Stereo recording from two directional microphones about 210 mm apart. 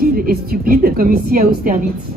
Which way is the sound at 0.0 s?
45° right (ahead or behind).